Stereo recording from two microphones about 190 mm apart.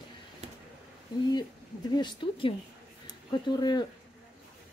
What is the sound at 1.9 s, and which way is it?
A woman's voice, 25° left (ahead or behind).